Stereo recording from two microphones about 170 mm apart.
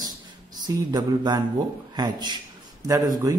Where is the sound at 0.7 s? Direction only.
25° right (ahead or behind).